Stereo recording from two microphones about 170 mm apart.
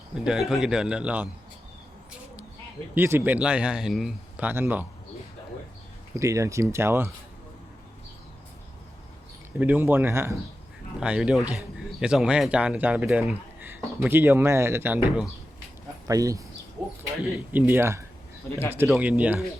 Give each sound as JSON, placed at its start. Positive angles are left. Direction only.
{"t": 0.3, "sound": "speech", "side_deg": 0}
{"t": 2.9, "sound": "a man's voice", "side_deg": -15}
{"t": 6.1, "sound": "a man's voice", "side_deg": -20}
{"t": 9.6, "sound": "a man's voice", "side_deg": -10}
{"t": 16.0, "sound": "speech", "side_deg": -20}
{"t": 17.5, "sound": "a man's voice", "side_deg": -15}